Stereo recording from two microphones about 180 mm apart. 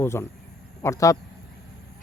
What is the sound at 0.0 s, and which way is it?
Speech, 15° left (ahead or behind).